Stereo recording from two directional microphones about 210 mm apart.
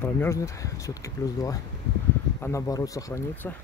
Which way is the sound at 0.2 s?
15° left (ahead or behind).